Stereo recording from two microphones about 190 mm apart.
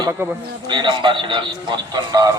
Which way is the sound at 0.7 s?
25° right (ahead or behind).